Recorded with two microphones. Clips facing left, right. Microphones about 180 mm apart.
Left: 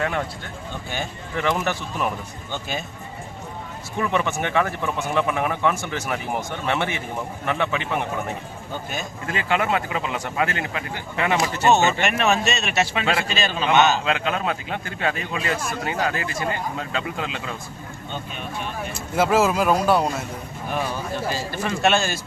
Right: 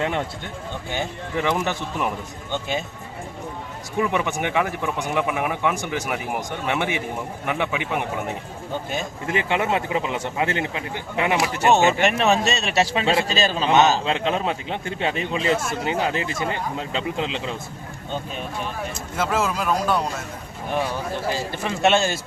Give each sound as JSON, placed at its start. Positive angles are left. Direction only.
{"t": 0.9, "sound": "a man's voice", "side_deg": -20}
{"t": 3.9, "sound": "a man's voice", "side_deg": -15}
{"t": 12.0, "sound": "a man's voice", "side_deg": -30}
{"t": 19.1, "sound": "speech", "side_deg": 5}
{"t": 21.3, "sound": "a man's voice", "side_deg": -20}